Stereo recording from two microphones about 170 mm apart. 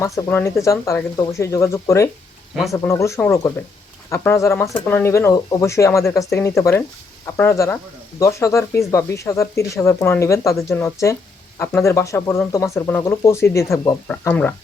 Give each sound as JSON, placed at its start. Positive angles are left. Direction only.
{"t": 0.0, "sound": "speech", "side_deg": 20}